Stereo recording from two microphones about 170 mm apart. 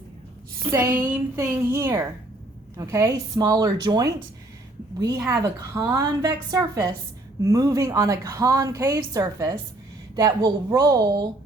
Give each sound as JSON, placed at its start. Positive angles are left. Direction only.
{"t": 0.7, "sound": "a woman's voice", "side_deg": -15}